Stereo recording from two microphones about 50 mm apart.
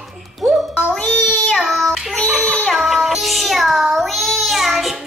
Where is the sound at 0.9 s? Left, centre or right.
Left.